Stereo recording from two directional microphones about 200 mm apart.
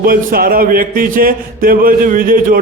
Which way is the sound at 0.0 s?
45° right (ahead or behind).